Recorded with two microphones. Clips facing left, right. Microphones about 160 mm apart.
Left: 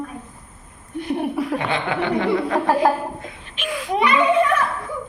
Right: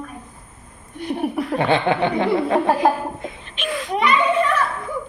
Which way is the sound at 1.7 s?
25° right (ahead or behind).